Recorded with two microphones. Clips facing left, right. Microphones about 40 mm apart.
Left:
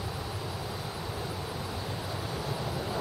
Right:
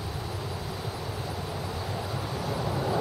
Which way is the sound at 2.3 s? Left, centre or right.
Centre.